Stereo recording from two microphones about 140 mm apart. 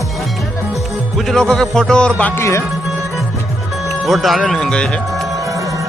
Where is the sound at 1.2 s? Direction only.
5° left (ahead or behind).